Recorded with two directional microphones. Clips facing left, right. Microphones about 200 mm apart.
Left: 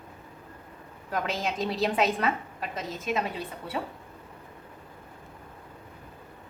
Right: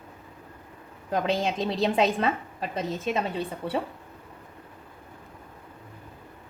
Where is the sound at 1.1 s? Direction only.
30° right (ahead or behind).